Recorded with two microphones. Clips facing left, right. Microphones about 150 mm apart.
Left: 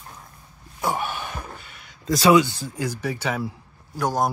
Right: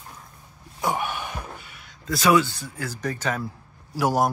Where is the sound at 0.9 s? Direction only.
15° right (ahead or behind).